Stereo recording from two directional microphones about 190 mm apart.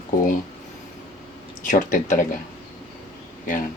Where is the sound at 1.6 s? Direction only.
45° left (ahead or behind).